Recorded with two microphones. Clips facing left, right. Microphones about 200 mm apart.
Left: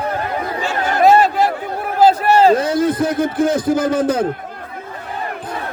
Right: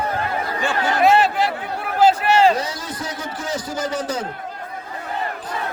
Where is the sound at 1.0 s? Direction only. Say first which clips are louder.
Left 5 dB; 40° left (ahead or behind).